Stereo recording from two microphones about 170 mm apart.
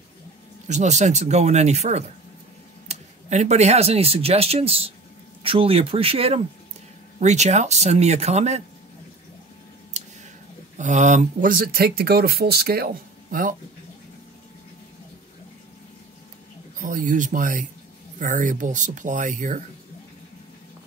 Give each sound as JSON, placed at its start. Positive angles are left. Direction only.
{"t": 0.7, "sound": "speech", "side_deg": -45}
{"t": 9.9, "sound": "a sound", "side_deg": -45}
{"t": 10.8, "sound": "speech", "side_deg": -45}
{"t": 16.8, "sound": "speech", "side_deg": -50}